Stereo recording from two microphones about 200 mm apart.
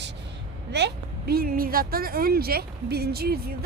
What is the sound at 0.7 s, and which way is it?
A woman's voice, 55° right (ahead or behind).